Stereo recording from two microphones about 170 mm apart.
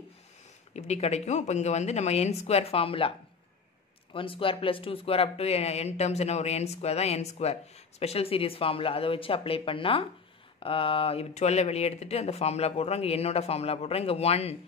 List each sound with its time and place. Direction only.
0.7 s speech: 40° left (ahead or behind)